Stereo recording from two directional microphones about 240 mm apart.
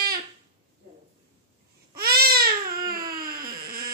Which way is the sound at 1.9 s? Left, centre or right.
Right.